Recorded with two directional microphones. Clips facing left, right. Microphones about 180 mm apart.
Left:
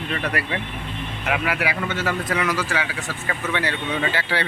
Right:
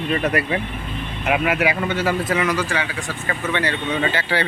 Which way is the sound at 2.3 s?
Centre (ahead or behind).